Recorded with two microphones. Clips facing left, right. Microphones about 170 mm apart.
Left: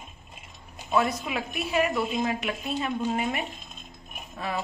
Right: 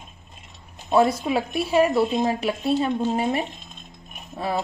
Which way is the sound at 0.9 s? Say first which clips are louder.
Right 7 dB; 35° right (ahead or behind).